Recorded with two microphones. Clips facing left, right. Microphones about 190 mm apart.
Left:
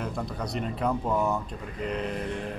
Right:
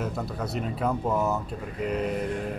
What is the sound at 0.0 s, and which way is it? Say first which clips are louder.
A man's voice: right 2 dB; 5° right (ahead or behind).